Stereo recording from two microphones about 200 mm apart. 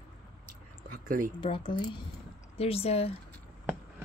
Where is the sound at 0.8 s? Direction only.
45° right (ahead or behind).